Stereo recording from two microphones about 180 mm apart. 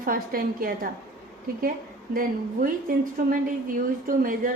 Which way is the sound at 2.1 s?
50° right (ahead or behind).